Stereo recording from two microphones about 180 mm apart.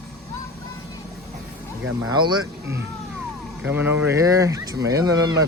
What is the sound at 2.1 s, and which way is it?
Speech, 25° right (ahead or behind).